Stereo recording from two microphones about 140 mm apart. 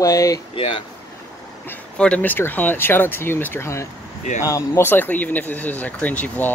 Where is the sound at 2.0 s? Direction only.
10° left (ahead or behind).